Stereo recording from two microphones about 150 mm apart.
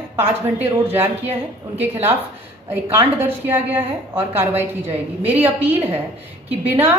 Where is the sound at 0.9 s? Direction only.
15° right (ahead or behind).